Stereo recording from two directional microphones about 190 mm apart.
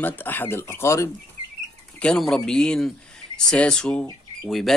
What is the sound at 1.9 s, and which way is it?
Speech, 5° left (ahead or behind).